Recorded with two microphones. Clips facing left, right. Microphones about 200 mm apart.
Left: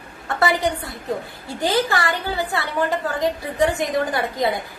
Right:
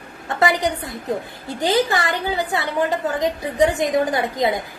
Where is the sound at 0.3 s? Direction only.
15° right (ahead or behind).